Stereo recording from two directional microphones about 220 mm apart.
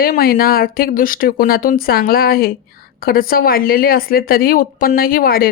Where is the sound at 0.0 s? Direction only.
45° left (ahead or behind).